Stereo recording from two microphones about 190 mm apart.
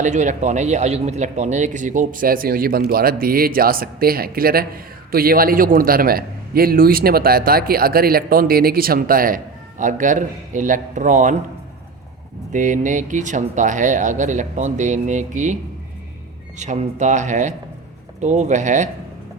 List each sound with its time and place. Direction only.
0.0 s speech: 40° right (ahead or behind)
12.5 s speech: 40° right (ahead or behind)
16.6 s speech: 40° right (ahead or behind)